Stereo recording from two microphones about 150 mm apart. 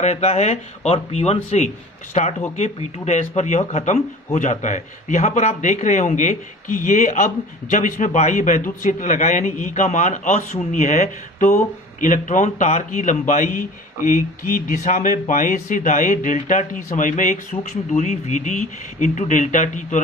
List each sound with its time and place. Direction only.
0.0 s a man's voice: 45° left (ahead or behind)